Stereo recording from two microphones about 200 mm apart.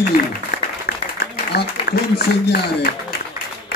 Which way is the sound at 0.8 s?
50° left (ahead or behind).